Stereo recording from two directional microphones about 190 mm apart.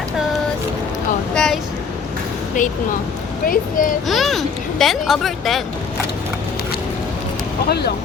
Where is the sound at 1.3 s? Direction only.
5° left (ahead or behind).